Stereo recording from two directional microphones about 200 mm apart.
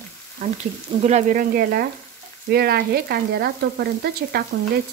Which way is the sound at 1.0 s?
35° right (ahead or behind).